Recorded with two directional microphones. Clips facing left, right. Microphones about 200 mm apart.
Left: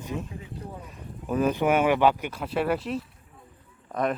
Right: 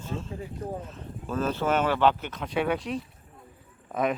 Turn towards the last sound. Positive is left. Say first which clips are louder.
# even
turn(degrees=0)  # may be behind; listen again after turning